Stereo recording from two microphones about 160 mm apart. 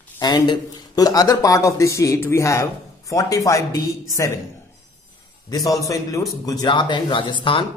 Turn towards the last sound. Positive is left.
turn(degrees=30)  # may be behind; listen again after turning